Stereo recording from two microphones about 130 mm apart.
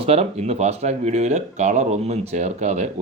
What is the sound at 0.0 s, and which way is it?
Speech, 50° right (ahead or behind).